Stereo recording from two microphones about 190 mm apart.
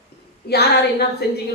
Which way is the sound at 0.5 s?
55° left (ahead or behind).